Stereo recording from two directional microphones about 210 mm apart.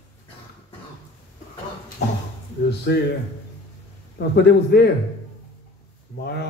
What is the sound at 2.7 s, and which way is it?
Speech, 50° left (ahead or behind).